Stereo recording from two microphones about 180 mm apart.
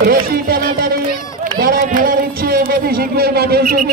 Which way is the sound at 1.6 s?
55° right (ahead or behind).